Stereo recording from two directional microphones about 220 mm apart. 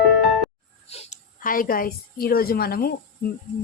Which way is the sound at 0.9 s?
30° left (ahead or behind).